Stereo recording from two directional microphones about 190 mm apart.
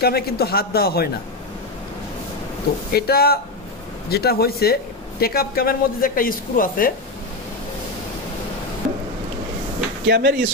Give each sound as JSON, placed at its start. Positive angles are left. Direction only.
{"t": 0.0, "sound": "a man's voice", "side_deg": 55}
{"t": 2.9, "sound": "a man's voice", "side_deg": 55}
{"t": 10.0, "sound": "speech", "side_deg": -60}